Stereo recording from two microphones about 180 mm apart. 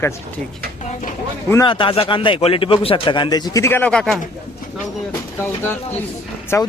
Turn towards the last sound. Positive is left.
turn(degrees=15)  # may be behind; listen again after turning